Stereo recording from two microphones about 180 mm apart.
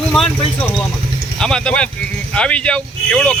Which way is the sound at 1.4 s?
5° left (ahead or behind).